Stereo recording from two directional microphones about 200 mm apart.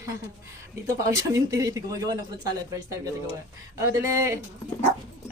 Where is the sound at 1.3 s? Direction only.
15° right (ahead or behind).